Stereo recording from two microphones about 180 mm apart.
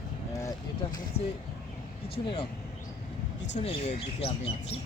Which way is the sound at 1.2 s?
35° left (ahead or behind).